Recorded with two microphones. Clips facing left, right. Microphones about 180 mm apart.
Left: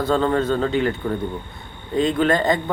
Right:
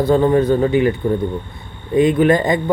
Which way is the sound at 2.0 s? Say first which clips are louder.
Right 5 dB; 15° right (ahead or behind).